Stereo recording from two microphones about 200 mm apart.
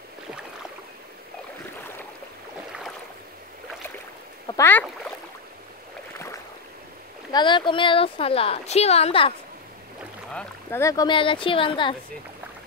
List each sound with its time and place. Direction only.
4.5 s boat: 10° left (ahead or behind)
6.1 s boat: 15° left (ahead or behind)
7.3 s speech: 25° left (ahead or behind)
10.3 s speech: 10° left (ahead or behind)